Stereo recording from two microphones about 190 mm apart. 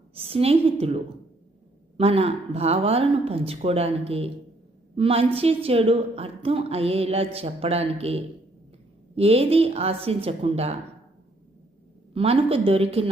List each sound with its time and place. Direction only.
0.1 s a woman's voice: 30° right (ahead or behind)
12.1 s a woman's voice: 30° right (ahead or behind)